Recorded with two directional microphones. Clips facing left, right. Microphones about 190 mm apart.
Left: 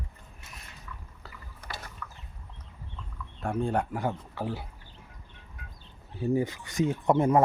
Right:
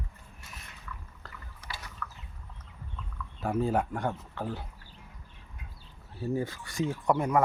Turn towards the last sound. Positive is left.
turn(degrees=25)  # may be behind; listen again after turning